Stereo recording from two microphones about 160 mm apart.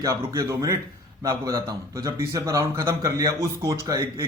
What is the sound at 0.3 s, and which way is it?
Speech, 20° right (ahead or behind).